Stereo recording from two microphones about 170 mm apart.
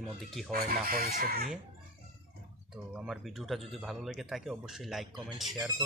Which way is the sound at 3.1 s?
Centre (ahead or behind).